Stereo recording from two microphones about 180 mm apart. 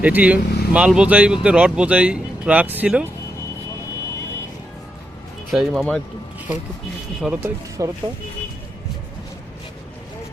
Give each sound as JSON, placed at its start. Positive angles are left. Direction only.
{"t": 0.0, "sound": "speech", "side_deg": -10}
{"t": 5.5, "sound": "speech", "side_deg": 0}
{"t": 7.2, "sound": "speech", "side_deg": -5}
{"t": 7.8, "sound": "speech", "side_deg": -20}